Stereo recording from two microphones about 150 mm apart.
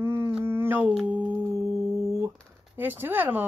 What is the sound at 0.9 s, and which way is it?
Humming, 10° right (ahead or behind).